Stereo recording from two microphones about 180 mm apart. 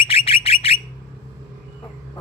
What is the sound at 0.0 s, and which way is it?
Bird, 30° left (ahead or behind).